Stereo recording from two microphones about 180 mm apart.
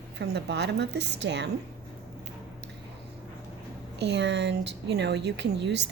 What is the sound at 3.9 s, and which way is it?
A woman's voice, 70° right (ahead or behind).